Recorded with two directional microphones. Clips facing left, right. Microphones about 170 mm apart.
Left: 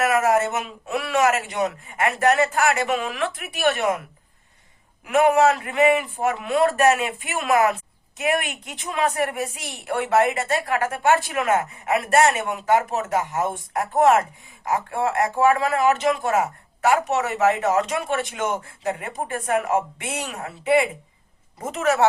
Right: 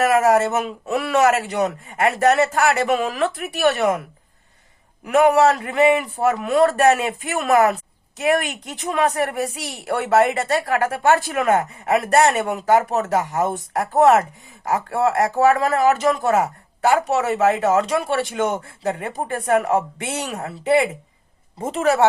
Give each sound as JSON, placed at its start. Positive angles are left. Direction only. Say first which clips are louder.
{"t": 0.0, "sound": "speech", "louder": "right 3 dB", "side_deg": -35}
{"t": 5.0, "sound": "speech", "louder": "right 2 dB", "side_deg": -35}